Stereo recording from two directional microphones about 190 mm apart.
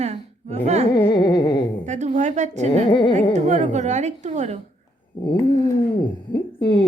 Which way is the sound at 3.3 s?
40° right (ahead or behind).